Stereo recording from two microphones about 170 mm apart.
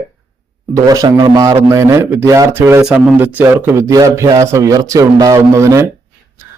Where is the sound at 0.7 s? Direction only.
20° right (ahead or behind).